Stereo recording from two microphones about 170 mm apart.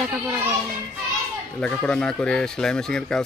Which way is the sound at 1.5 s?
5° left (ahead or behind).